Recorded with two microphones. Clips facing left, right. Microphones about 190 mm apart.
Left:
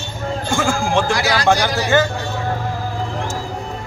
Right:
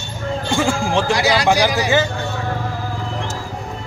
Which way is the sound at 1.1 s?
15° right (ahead or behind).